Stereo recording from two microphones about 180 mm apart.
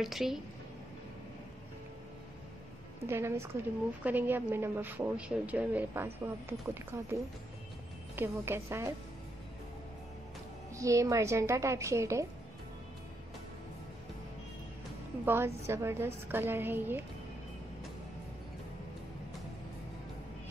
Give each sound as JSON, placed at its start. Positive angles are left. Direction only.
{"t": 0.0, "sound": "a woman's voice", "side_deg": 0}
{"t": 3.1, "sound": "a woman's voice", "side_deg": -15}
{"t": 8.2, "sound": "a woman's voice", "side_deg": -15}
{"t": 10.8, "sound": "a woman's voice", "side_deg": -15}
{"t": 15.2, "sound": "a woman's voice", "side_deg": -15}